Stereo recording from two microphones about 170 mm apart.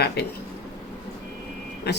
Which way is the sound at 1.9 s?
75° left (ahead or behind).